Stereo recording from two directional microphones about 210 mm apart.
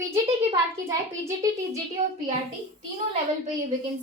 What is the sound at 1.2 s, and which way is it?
Speech, 15° right (ahead or behind).